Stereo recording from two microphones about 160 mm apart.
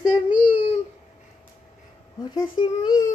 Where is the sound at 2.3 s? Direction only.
25° left (ahead or behind).